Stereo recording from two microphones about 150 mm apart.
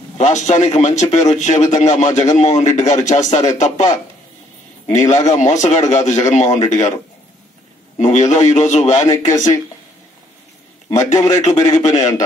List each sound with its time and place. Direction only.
0.2 s a man's voice: 50° left (ahead or behind)
5.1 s a man's voice: 50° left (ahead or behind)
8.0 s a man's voice: 50° left (ahead or behind)
11.1 s speech: 20° left (ahead or behind)
11.4 s a man's voice: 50° left (ahead or behind)